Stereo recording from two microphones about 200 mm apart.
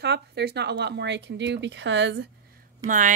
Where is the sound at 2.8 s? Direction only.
40° right (ahead or behind).